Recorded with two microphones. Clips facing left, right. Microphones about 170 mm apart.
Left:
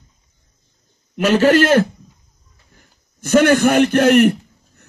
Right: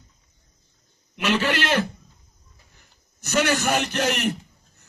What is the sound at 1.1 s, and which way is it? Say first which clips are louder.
A man's voice: left 10 dB; 45° left (ahead or behind).